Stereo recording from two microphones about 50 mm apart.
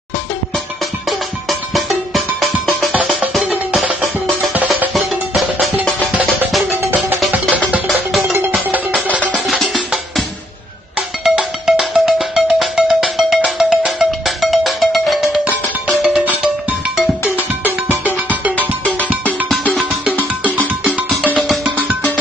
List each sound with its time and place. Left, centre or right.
1.5 s music: centre
3.4 s music: centre
4.9 s music: centre
7.9 s music: centre
11.2 s music: centre
17.2 s music: left
19.9 s music: right
21.6 s music: right